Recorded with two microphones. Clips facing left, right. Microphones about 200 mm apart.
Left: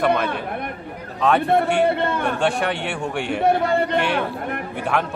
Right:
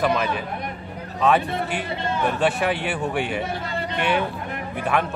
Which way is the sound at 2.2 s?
5° right (ahead or behind).